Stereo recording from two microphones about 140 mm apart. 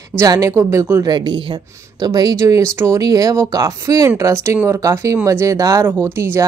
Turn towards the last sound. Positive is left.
turn(degrees=-20)  # may be behind; listen again after turning